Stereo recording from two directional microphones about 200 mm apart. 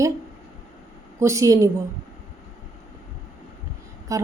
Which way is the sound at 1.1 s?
15° right (ahead or behind).